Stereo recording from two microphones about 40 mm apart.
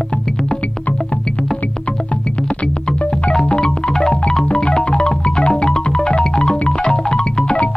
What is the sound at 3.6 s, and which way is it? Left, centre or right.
Music, centre.